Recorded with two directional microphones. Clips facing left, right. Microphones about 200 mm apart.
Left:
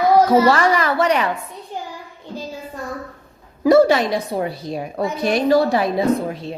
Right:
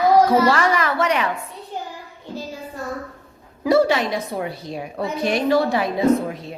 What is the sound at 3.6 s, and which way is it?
A woman's voice, 45° left (ahead or behind).